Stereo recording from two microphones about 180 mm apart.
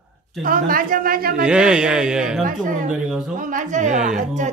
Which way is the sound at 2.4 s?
45° right (ahead or behind).